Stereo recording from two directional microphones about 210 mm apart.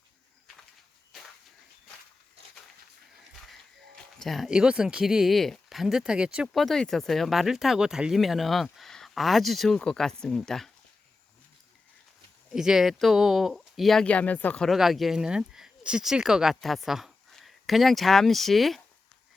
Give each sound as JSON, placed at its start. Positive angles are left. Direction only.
{"t": 4.2, "sound": "speech", "side_deg": 0}
{"t": 12.5, "sound": "speech", "side_deg": 0}